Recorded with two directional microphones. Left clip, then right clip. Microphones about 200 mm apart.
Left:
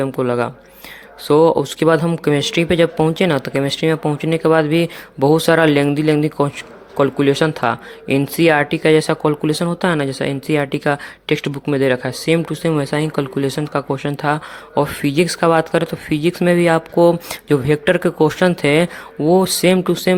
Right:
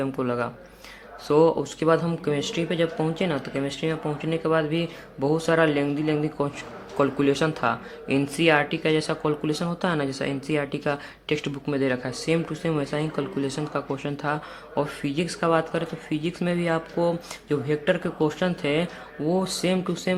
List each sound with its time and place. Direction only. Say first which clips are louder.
0.0 s speech: left 8 dB; 40° left (ahead or behind)